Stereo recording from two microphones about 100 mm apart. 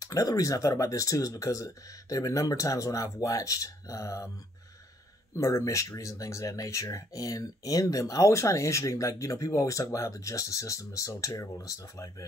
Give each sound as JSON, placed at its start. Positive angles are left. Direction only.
{"t": 0.0, "sound": "speech", "side_deg": 35}
{"t": 5.3, "sound": "speech", "side_deg": 30}